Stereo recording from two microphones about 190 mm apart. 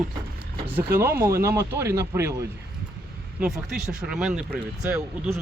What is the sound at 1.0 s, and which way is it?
Speech, 50° right (ahead or behind).